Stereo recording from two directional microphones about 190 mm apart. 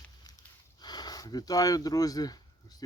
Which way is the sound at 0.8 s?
20° left (ahead or behind).